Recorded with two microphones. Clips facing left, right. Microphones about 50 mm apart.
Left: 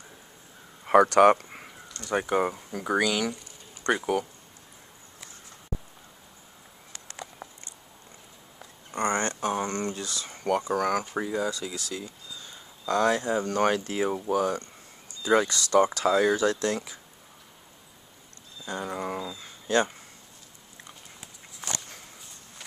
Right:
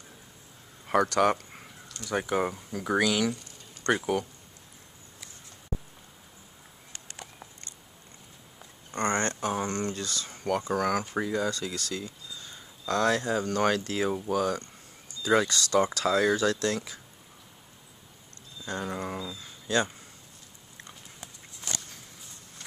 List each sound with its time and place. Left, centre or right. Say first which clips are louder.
1.0 s speech: left 6 dB; left
2.1 s speech: left 2 dB; centre
8.9 s a sound: left 1 dB; centre
9.6 s speech: left 1 dB; left
10.3 s a sound: left 3 dB; left
10.7 s speech: left 1 dB; left
11.2 s speech: even; centre
18.7 s speech: left 1 dB; left